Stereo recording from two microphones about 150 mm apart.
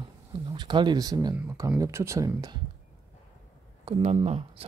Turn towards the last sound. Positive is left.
turn(degrees=-45)  # may be behind; listen again after turning